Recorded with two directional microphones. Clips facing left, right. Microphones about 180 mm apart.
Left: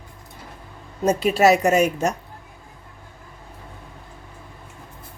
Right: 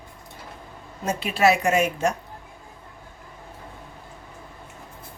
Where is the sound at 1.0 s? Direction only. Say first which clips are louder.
Left 4 dB; 40° left (ahead or behind).